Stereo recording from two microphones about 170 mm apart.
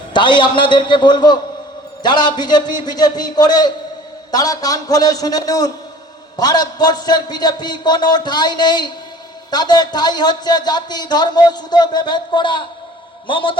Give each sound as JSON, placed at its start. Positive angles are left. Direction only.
{"t": 0.1, "sound": "a man's voice", "side_deg": 25}